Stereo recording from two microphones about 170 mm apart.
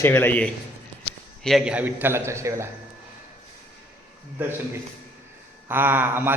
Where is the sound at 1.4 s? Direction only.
Centre (ahead or behind); by 2.7 s 15° right (ahead or behind).